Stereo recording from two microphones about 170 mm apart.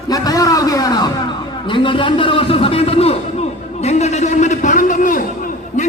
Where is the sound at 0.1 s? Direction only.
20° left (ahead or behind).